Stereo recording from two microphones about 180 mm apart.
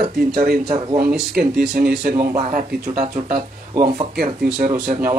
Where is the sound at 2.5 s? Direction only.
45° right (ahead or behind).